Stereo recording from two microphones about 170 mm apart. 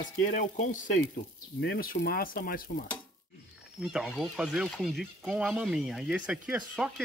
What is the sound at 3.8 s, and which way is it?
Speech, 5° right (ahead or behind).